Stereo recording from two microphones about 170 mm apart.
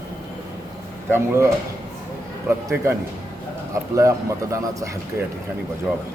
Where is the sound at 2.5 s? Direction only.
15° right (ahead or behind).